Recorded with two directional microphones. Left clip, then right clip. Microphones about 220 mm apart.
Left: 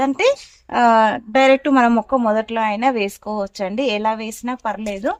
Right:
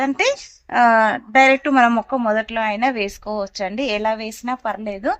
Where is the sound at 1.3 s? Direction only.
40° left (ahead or behind).